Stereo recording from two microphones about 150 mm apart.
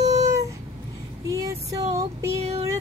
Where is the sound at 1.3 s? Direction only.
20° right (ahead or behind).